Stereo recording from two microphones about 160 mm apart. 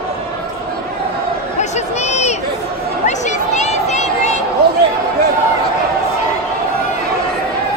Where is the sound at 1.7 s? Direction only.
45° left (ahead or behind).